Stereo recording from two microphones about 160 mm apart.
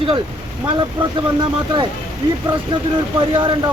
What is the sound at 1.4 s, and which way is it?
Speech, 30° right (ahead or behind).